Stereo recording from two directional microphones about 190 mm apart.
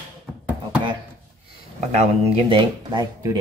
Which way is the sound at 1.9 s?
35° right (ahead or behind).